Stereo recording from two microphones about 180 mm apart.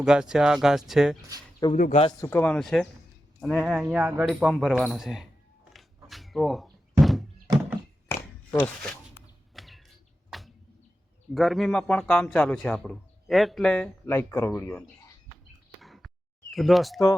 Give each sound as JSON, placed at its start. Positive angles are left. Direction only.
{"t": 0.0, "sound": "a man's voice", "side_deg": -5}
{"t": 1.7, "sound": "speech", "side_deg": 45}
{"t": 2.0, "sound": "a man's voice", "side_deg": 15}
{"t": 5.7, "sound": "a sound", "side_deg": 0}
{"t": 7.0, "sound": "thunk", "side_deg": 0}
{"t": 8.5, "sound": "speech", "side_deg": 5}
{"t": 9.6, "sound": "a sound", "side_deg": 0}
{"t": 11.3, "sound": "a man's voice", "side_deg": 0}
{"t": 15.8, "sound": "a sound", "side_deg": 0}